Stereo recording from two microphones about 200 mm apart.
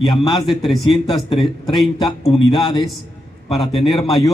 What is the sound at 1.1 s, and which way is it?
A man's voice, 25° left (ahead or behind).